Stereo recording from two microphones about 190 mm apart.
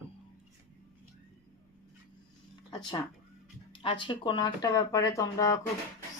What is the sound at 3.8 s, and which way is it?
Speech, 25° left (ahead or behind).